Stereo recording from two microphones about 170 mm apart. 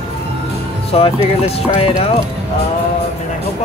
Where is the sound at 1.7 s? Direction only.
35° left (ahead or behind).